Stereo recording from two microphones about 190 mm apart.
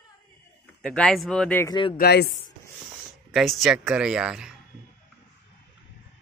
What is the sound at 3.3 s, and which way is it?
Speech, centre (ahead or behind).